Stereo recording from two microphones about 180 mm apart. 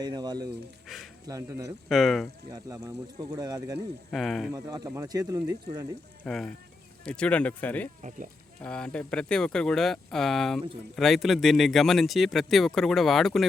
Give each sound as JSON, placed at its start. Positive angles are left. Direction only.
{"t": 0.0, "sound": "speech", "side_deg": -20}
{"t": 0.9, "sound": "speech", "side_deg": 0}
{"t": 1.3, "sound": "speech", "side_deg": -15}
{"t": 1.9, "sound": "speech", "side_deg": 0}
{"t": 2.5, "sound": "speech", "side_deg": -20}
{"t": 4.1, "sound": "speech", "side_deg": 0}
{"t": 4.5, "sound": "speech", "side_deg": -20}
{"t": 6.2, "sound": "speech", "side_deg": 5}